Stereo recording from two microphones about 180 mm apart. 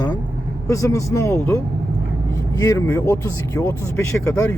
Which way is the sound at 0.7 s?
15° left (ahead or behind).